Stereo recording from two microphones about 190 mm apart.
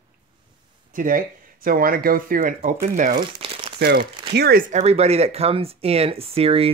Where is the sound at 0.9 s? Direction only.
45° right (ahead or behind).